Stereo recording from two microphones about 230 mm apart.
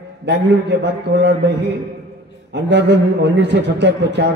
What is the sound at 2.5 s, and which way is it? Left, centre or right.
A man's voice, right.